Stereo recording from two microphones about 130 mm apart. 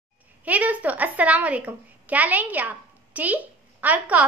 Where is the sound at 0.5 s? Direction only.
10° right (ahead or behind).